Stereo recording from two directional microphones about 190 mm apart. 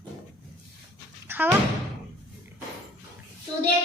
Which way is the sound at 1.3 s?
10° right (ahead or behind).